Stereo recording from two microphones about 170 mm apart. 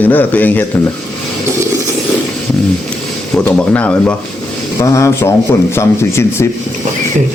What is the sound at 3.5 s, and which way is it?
Speech, 10° left (ahead or behind).